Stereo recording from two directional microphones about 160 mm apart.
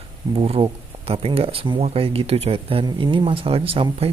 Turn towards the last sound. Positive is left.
turn(degrees=-35)  # may be behind; listen again after turning